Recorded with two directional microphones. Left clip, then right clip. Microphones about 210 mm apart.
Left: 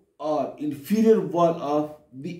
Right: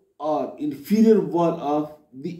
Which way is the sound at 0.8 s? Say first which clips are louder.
Right 3 dB; 20° left (ahead or behind).